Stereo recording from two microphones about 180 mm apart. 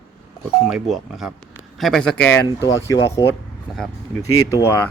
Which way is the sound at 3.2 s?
25° left (ahead or behind).